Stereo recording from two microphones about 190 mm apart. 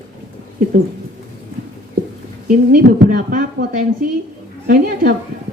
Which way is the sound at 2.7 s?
45° right (ahead or behind).